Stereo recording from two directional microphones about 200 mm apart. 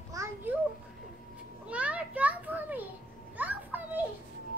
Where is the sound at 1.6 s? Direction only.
5° right (ahead or behind).